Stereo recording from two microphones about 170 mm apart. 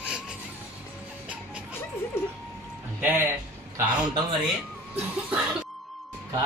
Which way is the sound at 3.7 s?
25° right (ahead or behind).